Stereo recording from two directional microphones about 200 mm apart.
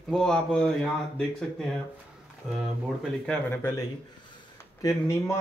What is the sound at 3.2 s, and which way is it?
Speech, 10° left (ahead or behind).